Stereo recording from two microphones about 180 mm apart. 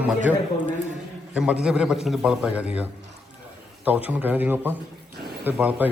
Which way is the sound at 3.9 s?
10° right (ahead or behind).